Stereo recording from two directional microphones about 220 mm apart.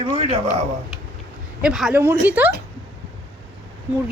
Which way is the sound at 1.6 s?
5° right (ahead or behind).